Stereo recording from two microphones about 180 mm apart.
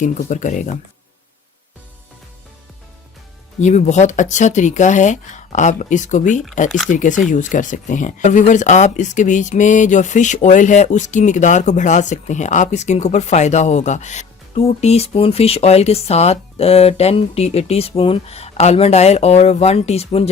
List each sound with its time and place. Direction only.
0.0 s speech: 45° left (ahead or behind)
3.6 s speech: 40° left (ahead or behind)
6.7 s speech: centre (ahead or behind)
6.9 s speech: 45° left (ahead or behind)